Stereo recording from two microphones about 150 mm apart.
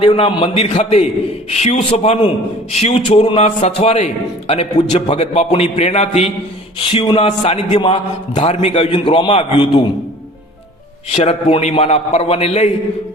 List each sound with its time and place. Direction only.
0.0 s a man's voice: 40° left (ahead or behind)
11.1 s a man's voice: 45° left (ahead or behind)